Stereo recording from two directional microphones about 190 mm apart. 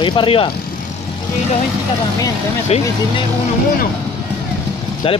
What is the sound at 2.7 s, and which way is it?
Speech, 35° left (ahead or behind).